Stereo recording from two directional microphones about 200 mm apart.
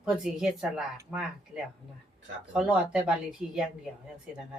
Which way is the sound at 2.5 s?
5° right (ahead or behind).